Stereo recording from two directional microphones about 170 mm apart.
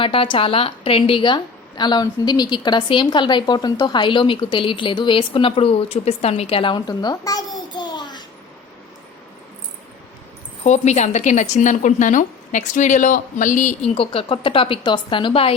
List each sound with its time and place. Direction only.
0.0 s a woman's voice: 30° left (ahead or behind)
10.6 s a woman's voice: 40° left (ahead or behind)
13.9 s a woman's voice: 35° left (ahead or behind)